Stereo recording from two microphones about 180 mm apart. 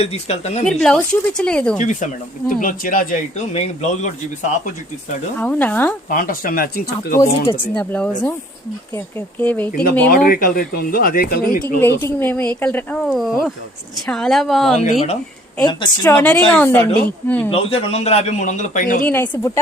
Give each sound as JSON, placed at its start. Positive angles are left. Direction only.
{"t": 0.0, "sound": "a man's voice", "side_deg": 35}
{"t": 0.7, "sound": "a woman's voice", "side_deg": 5}
{"t": 1.8, "sound": "speech", "side_deg": 45}
{"t": 3.5, "sound": "a man's voice", "side_deg": 40}
{"t": 5.4, "sound": "speech", "side_deg": 10}
{"t": 6.1, "sound": "speech", "side_deg": 50}
{"t": 7.2, "sound": "a man's voice", "side_deg": 30}
{"t": 7.6, "sound": "speech", "side_deg": 10}
{"t": 10.1, "sound": "speech", "side_deg": 50}
{"t": 11.8, "sound": "a woman's voice", "side_deg": 15}
{"t": 14.8, "sound": "a man's voice", "side_deg": 35}
{"t": 15.6, "sound": "speech", "side_deg": 20}
{"t": 17.5, "sound": "a man's voice", "side_deg": 30}
{"t": 19.0, "sound": "speech", "side_deg": 10}